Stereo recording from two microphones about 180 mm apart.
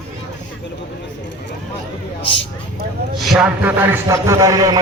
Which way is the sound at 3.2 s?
Centre (ahead or behind).